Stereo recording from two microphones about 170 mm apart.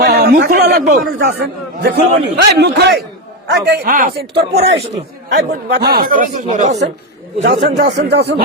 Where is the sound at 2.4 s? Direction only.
75° right (ahead or behind).